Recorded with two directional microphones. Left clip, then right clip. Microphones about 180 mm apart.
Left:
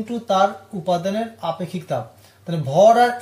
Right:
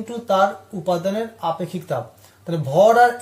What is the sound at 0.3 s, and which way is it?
Speech, 40° right (ahead or behind).